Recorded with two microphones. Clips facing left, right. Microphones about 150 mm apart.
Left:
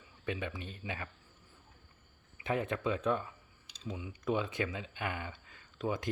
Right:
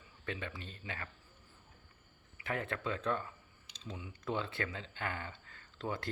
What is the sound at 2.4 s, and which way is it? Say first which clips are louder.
Speech: left 5 dB; 20° left (ahead or behind).